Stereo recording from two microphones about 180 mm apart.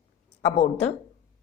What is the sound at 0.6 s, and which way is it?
Speech, 35° left (ahead or behind).